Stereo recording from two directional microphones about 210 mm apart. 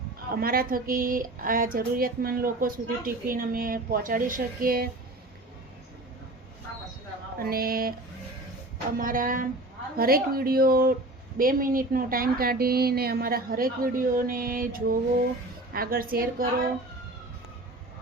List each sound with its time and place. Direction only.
0.3 s a woman's voice: 45° right (ahead or behind)
7.3 s a woman's voice: 45° right (ahead or behind)
9.0 s a woman's voice: 40° right (ahead or behind)